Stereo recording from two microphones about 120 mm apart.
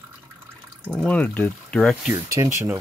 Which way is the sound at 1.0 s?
10° left (ahead or behind).